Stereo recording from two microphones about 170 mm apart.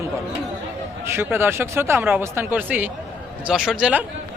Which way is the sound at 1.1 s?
15° right (ahead or behind).